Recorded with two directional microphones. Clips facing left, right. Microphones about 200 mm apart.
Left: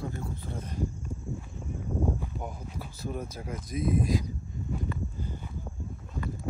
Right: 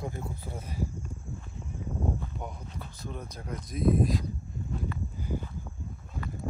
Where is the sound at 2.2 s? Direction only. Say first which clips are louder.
Left 2 dB; 5° left (ahead or behind).